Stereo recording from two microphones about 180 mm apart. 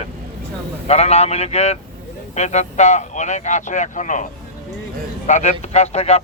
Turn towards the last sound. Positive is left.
turn(degrees=35)  # may be behind; listen again after turning